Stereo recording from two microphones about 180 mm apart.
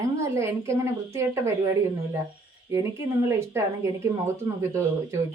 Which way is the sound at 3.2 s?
15° right (ahead or behind).